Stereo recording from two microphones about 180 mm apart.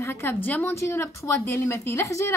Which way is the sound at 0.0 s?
10° left (ahead or behind).